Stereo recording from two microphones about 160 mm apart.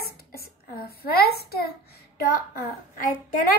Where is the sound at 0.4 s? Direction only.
75° left (ahead or behind).